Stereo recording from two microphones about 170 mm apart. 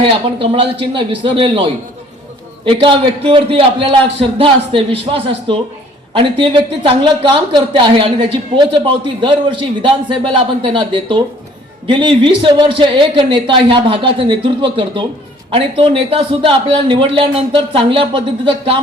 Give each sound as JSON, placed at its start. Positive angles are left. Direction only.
{"t": 0.0, "sound": "a man's voice", "side_deg": -30}